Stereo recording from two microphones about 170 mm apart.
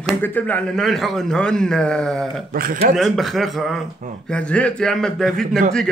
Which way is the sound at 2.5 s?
60° right (ahead or behind).